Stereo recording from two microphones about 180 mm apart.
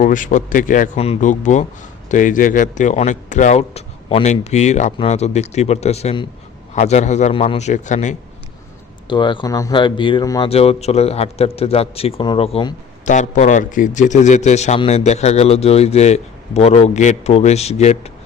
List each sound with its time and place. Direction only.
0.0 s speech: 45° left (ahead or behind)
0.9 s a man's voice: 35° left (ahead or behind)
9.0 s speech: 25° left (ahead or behind)
10.5 s a man's voice: 35° left (ahead or behind)
13.1 s a man's voice: 40° left (ahead or behind)